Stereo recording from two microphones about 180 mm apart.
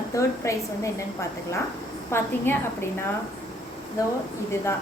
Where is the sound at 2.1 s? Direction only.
15° left (ahead or behind).